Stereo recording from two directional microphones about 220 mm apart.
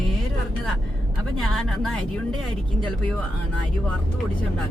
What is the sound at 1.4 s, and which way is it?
Speech, centre (ahead or behind).